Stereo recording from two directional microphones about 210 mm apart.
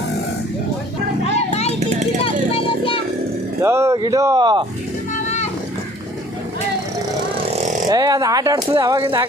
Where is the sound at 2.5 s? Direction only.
25° left (ahead or behind).